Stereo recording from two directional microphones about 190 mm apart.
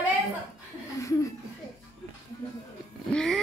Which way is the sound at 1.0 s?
15° left (ahead or behind).